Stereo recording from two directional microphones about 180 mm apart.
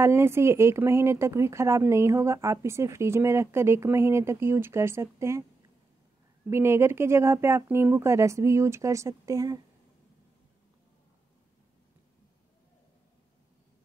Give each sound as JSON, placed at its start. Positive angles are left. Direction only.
{"t": 0.0, "sound": "speech", "side_deg": -15}
{"t": 6.5, "sound": "speech", "side_deg": -15}